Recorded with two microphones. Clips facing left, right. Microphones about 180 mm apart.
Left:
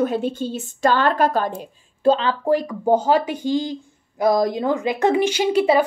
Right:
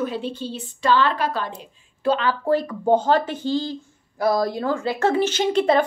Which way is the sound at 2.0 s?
25° left (ahead or behind).